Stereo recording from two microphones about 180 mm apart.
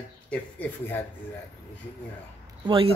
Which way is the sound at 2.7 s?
30° right (ahead or behind).